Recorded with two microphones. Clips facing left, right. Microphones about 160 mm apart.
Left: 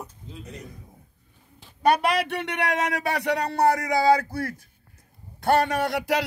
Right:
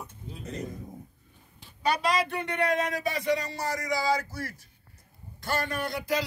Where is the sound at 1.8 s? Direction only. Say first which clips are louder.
Left 5 dB; 60° left (ahead or behind).